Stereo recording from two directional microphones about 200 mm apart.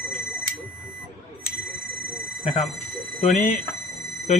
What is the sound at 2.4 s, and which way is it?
Speech, 30° left (ahead or behind).